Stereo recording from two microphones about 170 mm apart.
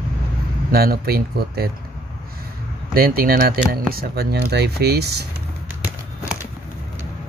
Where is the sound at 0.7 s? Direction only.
65° right (ahead or behind).